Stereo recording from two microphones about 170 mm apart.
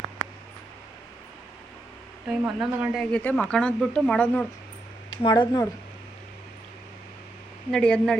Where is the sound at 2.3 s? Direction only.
5° right (ahead or behind).